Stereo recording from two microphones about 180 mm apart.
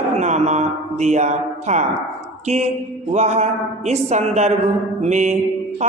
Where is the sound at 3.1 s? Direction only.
40° right (ahead or behind).